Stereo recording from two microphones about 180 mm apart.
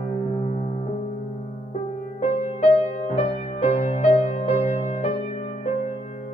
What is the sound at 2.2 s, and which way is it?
Music, 40° left (ahead or behind).